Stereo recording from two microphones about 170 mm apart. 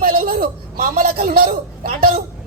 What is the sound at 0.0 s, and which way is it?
A man's voice, 60° right (ahead or behind).